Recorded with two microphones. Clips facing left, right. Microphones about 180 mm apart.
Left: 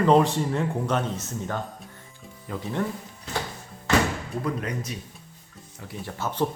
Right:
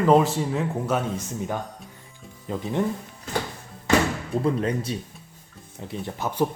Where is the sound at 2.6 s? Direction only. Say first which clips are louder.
Right 3 dB; 20° right (ahead or behind).